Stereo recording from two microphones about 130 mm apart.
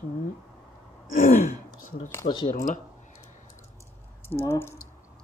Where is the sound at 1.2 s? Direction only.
90° left.